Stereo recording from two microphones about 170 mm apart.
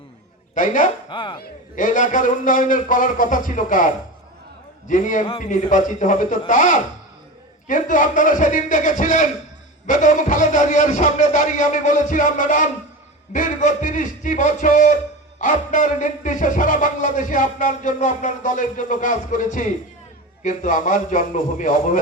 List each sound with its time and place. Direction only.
0.5 s a man's voice: 50° left (ahead or behind)
1.1 s speech: 30° left (ahead or behind)
1.7 s a man's voice: 50° left (ahead or behind)